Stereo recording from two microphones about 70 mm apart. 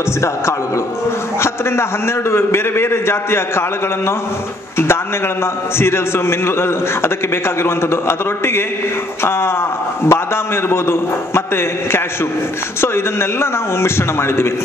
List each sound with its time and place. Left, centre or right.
2.3 s a man's voice: left
5.8 s a man's voice: left
10.0 s a man's voice: left